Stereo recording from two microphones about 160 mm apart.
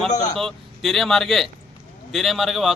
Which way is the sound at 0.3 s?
Centre (ahead or behind).